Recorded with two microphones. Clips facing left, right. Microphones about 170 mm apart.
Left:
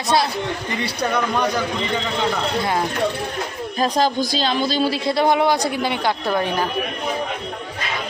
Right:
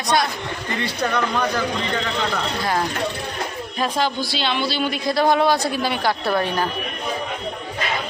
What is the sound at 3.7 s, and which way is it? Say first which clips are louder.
A man's voice: left 4 dB; 40° left (ahead or behind).